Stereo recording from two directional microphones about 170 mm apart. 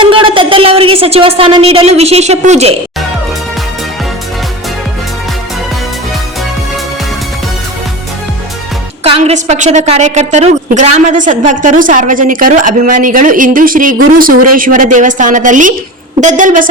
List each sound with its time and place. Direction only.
0.0 s a woman's voice: 30° right (ahead or behind)
9.0 s a woman's voice: 35° right (ahead or behind)